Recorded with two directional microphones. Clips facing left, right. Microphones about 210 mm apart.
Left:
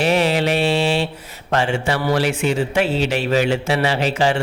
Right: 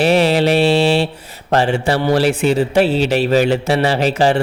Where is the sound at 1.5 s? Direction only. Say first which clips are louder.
Right 4 dB; 35° right (ahead or behind).